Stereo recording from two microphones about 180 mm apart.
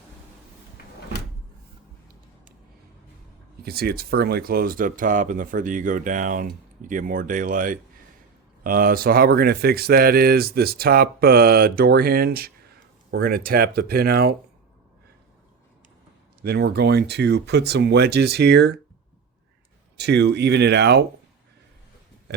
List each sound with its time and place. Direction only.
3.6 s speech: 60° right (ahead or behind)
16.4 s speech: 60° right (ahead or behind)
20.0 s speech: 70° right (ahead or behind)